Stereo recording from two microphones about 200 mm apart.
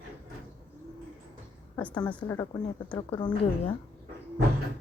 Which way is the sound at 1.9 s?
20° left (ahead or behind).